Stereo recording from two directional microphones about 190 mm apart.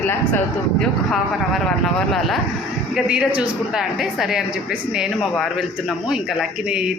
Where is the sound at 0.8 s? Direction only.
Centre (ahead or behind).